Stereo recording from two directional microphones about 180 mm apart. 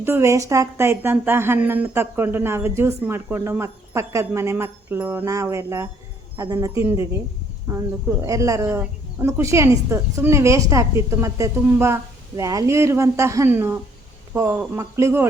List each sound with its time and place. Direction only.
0.0 s a woman's voice: 15° right (ahead or behind)